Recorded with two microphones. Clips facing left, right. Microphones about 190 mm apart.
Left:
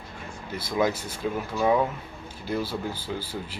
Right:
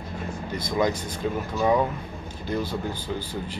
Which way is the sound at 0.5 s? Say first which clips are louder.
Even; 5° left (ahead or behind).